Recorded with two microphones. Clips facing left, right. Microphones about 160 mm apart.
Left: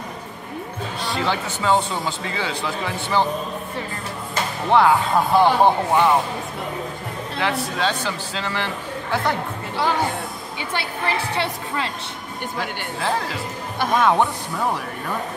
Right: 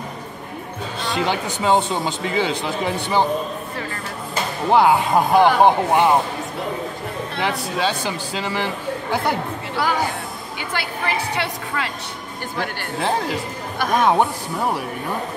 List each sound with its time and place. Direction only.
1.0 s speech: 15° right (ahead or behind)
4.6 s speech: 15° right (ahead or behind)
7.4 s speech: 15° right (ahead or behind)
9.8 s a woman's voice: 25° left (ahead or behind)
11.3 s a woman's voice: 25° left (ahead or behind)
13.9 s speech: 15° right (ahead or behind)